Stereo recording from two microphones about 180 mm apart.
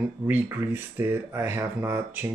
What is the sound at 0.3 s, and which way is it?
Speech, 10° right (ahead or behind).